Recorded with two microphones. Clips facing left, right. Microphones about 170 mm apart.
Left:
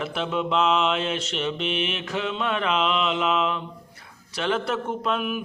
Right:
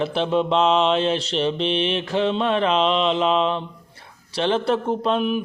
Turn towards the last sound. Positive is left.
turn(degrees=-30)  # may be behind; listen again after turning